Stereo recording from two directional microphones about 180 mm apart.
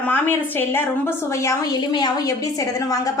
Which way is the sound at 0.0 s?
10° left (ahead or behind).